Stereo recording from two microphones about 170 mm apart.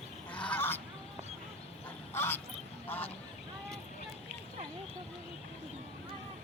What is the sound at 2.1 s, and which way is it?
Quack, 15° left (ahead or behind).